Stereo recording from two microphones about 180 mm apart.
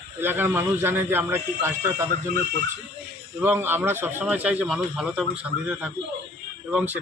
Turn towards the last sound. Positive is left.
turn(degrees=-5)  # may be behind; listen again after turning